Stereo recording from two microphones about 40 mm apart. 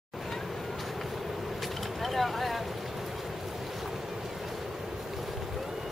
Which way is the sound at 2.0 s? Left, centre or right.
Centre.